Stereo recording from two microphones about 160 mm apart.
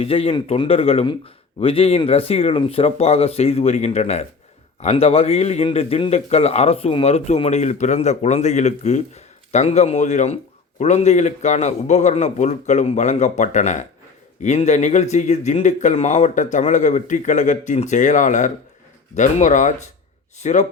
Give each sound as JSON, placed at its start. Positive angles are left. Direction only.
{"t": 0.0, "sound": "a man's voice", "side_deg": 40}